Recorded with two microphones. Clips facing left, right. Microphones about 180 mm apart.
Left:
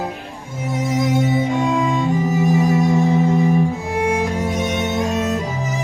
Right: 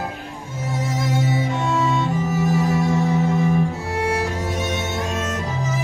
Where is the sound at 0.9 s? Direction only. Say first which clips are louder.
Left 6 dB; 15° left (ahead or behind).